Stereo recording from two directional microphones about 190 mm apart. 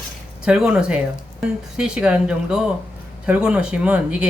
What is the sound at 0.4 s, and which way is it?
Speech, 5° right (ahead or behind).